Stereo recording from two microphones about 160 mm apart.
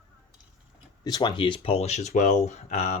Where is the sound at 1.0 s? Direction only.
25° left (ahead or behind).